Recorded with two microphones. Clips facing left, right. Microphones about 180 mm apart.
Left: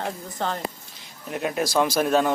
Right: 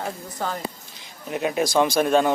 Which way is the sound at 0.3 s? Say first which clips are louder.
Left 1 dB; 5° right (ahead or behind).